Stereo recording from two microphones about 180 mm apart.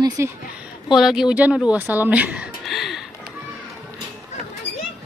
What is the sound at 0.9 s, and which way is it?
Speech, centre (ahead or behind).